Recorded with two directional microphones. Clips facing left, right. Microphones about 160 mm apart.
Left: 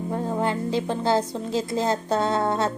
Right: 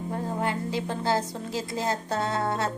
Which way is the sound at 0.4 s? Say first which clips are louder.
Left 4 dB; 25° left (ahead or behind).